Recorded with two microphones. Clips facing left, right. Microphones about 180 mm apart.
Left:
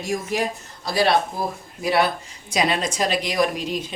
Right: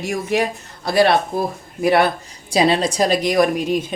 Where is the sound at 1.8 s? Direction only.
55° right (ahead or behind).